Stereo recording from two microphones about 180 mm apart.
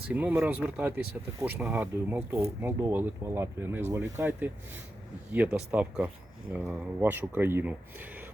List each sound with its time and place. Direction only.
0.1 s speech: 10° right (ahead or behind)